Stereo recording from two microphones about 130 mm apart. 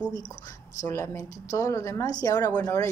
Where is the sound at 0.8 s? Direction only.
20° left (ahead or behind).